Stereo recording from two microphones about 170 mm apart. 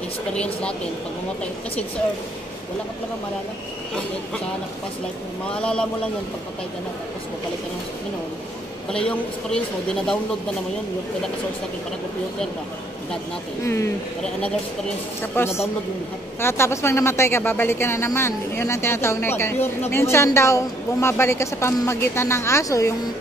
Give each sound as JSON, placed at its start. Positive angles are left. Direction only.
{"t": 0.3, "sound": "a woman's voice", "side_deg": 5}
{"t": 5.5, "sound": "speech", "side_deg": 5}
{"t": 8.9, "sound": "a woman's voice", "side_deg": 5}
{"t": 15.3, "sound": "speech", "side_deg": 15}